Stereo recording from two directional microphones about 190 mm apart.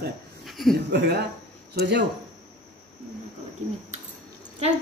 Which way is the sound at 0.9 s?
60° right (ahead or behind).